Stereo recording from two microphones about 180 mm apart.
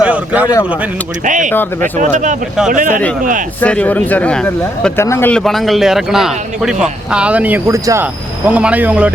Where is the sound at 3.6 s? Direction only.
10° left (ahead or behind).